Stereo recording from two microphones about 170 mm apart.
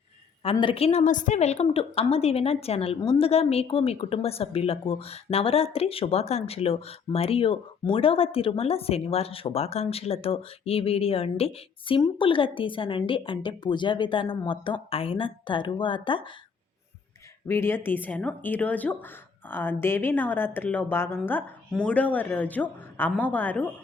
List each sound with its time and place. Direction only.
0.5 s a woman's voice: 30° left (ahead or behind)
17.5 s a woman's voice: 15° left (ahead or behind)